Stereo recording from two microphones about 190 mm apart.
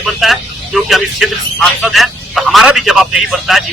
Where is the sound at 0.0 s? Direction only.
Centre (ahead or behind).